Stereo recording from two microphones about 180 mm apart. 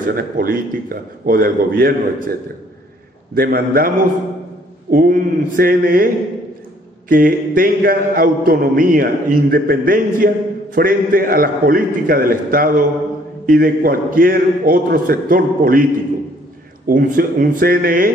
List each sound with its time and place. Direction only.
0.1 s a man's voice: 50° right (ahead or behind)
3.3 s a man's voice: 55° right (ahead or behind)
4.9 s a man's voice: 50° right (ahead or behind)
7.1 s a man's voice: 50° right (ahead or behind)